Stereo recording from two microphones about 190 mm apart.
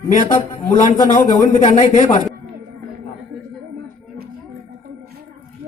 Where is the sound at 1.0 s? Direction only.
40° left (ahead or behind).